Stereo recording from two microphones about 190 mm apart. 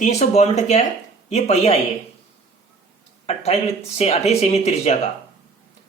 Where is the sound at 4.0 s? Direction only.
35° left (ahead or behind).